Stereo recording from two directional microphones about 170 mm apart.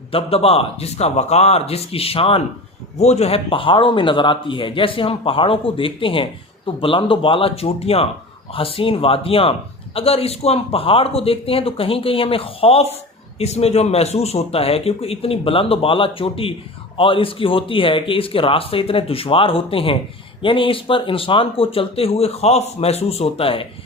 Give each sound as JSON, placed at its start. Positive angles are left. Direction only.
{"t": 0.1, "sound": "a man's voice", "side_deg": 35}